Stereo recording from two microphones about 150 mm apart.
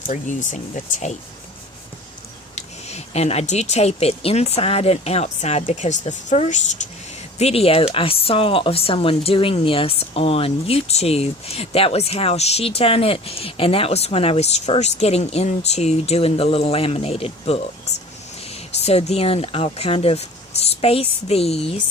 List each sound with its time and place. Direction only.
0.1 s speech: 55° left (ahead or behind)
2.6 s speech: 45° left (ahead or behind)